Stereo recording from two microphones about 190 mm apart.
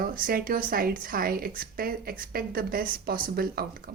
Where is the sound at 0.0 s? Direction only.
50° right (ahead or behind).